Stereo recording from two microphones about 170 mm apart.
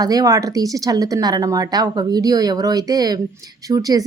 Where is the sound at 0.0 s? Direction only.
20° right (ahead or behind).